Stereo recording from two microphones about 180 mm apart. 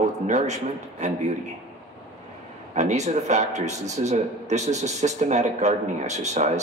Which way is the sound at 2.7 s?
40° right (ahead or behind).